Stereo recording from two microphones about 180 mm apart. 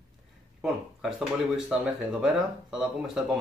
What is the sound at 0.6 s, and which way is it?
Speech, 5° right (ahead or behind).